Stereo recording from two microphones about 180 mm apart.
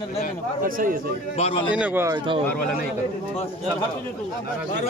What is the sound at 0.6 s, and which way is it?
Speech, 50° right (ahead or behind).